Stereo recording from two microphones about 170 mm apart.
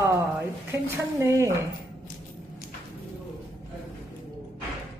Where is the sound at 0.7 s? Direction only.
15° right (ahead or behind).